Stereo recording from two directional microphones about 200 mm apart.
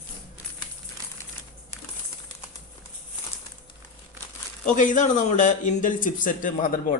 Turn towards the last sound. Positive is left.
turn(degrees=40)  # may be behind; listen again after turning